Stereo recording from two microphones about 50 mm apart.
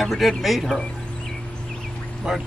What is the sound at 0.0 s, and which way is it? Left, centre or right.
Speech, centre.